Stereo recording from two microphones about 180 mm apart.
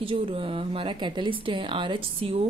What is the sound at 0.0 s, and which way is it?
Speech, 30° right (ahead or behind).